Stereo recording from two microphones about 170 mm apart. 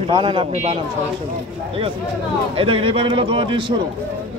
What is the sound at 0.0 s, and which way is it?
Speech, 30° right (ahead or behind).